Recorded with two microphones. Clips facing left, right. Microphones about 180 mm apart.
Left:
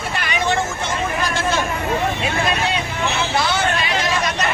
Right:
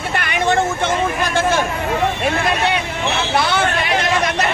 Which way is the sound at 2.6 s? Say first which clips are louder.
Right 2 dB; 65° right (ahead or behind).